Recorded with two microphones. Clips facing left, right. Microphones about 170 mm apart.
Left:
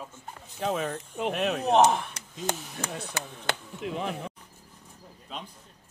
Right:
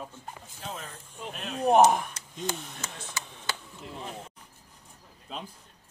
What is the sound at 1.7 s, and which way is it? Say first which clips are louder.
Speech: right 2 dB; 10° right (ahead or behind).